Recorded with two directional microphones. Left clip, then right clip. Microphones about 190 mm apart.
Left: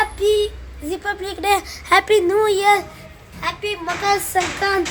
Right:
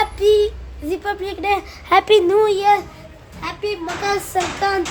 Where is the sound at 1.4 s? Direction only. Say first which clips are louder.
Left 2 dB; centre (ahead or behind).